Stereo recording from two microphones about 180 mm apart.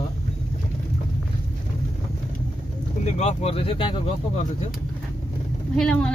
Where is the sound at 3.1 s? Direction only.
35° left (ahead or behind).